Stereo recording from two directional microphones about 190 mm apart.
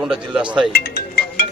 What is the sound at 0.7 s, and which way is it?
Music, 55° left (ahead or behind).